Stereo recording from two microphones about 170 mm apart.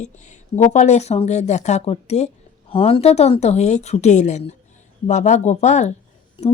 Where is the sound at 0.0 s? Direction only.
45° left (ahead or behind).